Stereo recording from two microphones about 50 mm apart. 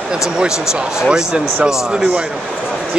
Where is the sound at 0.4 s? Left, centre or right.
Centre.